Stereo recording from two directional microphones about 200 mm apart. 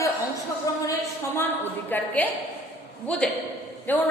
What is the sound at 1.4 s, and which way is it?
A woman's voice, 10° left (ahead or behind).